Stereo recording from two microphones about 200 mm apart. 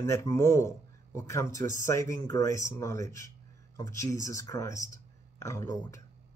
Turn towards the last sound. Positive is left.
turn(degrees=15)  # may be behind; listen again after turning